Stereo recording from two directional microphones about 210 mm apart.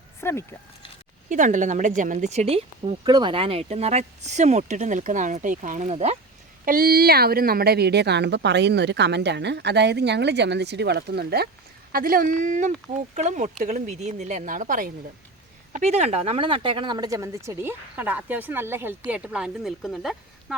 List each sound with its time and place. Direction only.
0.2 s speech: 10° left (ahead or behind)
1.3 s speech: 35° right (ahead or behind)
6.7 s speech: 45° right (ahead or behind); by 20.6 s centre (ahead or behind)